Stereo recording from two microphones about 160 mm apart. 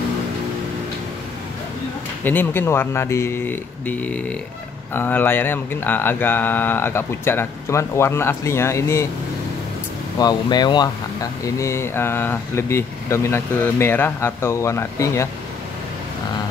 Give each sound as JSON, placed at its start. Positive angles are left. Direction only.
{"t": 2.2, "sound": "speech", "side_deg": 10}
{"t": 10.1, "sound": "speech", "side_deg": 25}